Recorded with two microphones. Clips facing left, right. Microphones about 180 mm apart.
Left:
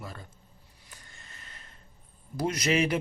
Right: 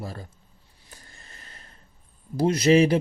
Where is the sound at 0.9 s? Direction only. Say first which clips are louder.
Right 3 dB; 35° right (ahead or behind).